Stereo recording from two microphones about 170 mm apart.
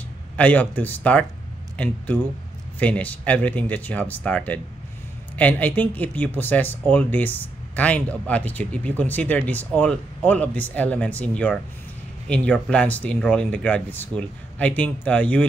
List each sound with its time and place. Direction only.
0.4 s speech: 10° left (ahead or behind)